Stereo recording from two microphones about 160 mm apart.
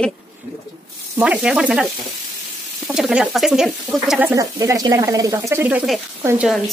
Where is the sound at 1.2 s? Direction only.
5° right (ahead or behind).